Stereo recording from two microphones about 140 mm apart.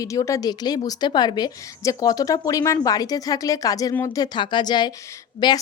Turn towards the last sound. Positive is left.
turn(degrees=30)  # may be behind; listen again after turning